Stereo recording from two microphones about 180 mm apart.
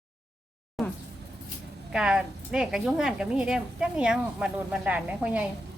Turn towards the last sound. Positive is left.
turn(degrees=-5)  # may be behind; listen again after turning